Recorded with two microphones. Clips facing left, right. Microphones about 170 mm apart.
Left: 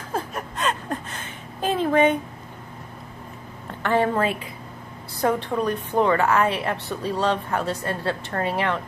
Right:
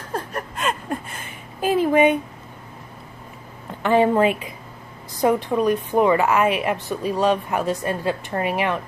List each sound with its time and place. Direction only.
0.1 s a sound: centre (ahead or behind)
3.8 s a woman's voice: 15° right (ahead or behind)
5.5 s a woman's voice: 10° right (ahead or behind)